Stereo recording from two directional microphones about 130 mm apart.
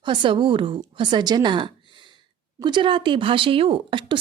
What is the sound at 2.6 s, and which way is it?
A woman's voice, 35° right (ahead or behind).